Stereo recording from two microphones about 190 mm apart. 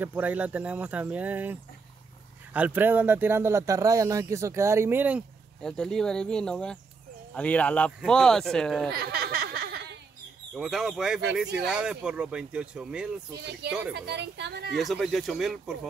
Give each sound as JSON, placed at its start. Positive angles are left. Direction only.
{"t": 0.0, "sound": "speech", "side_deg": -10}
{"t": 5.6, "sound": "speech", "side_deg": 0}
{"t": 8.9, "sound": "a sound", "side_deg": -55}
{"t": 10.5, "sound": "speech", "side_deg": 0}
{"t": 13.9, "sound": "a woman's voice", "side_deg": -60}
{"t": 14.7, "sound": "speech", "side_deg": 0}